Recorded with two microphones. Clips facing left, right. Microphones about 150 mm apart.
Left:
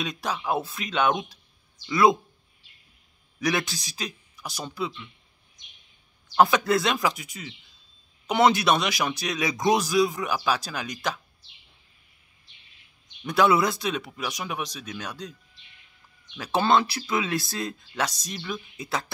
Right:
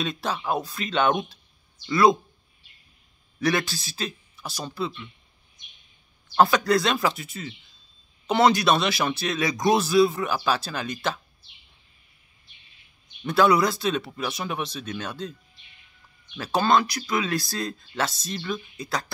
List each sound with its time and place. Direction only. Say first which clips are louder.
0.0 s speech: right 2 dB; 10° left (ahead or behind)
1.9 s speech: right 1 dB; 20° left (ahead or behind)
3.3 s speech: right 2 dB; 20° left (ahead or behind)
6.5 s speech: right 1 dB; 20° left (ahead or behind)
13.3 s speech: right 1 dB; 20° left (ahead or behind)
16.5 s speech: even; 25° left (ahead or behind)